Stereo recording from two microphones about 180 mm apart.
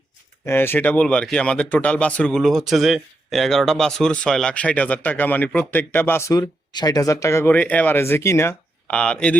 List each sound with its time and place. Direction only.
0.4 s speech: 10° left (ahead or behind)